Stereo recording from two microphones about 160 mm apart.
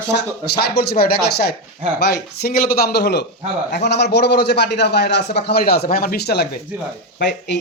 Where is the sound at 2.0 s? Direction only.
90° left.